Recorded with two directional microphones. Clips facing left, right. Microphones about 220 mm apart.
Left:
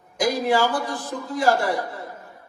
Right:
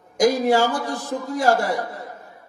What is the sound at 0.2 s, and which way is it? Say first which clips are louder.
A man's voice: right 4 dB; 45° right (ahead or behind).